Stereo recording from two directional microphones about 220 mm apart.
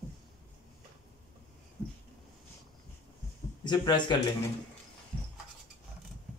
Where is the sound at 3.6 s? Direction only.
20° left (ahead or behind).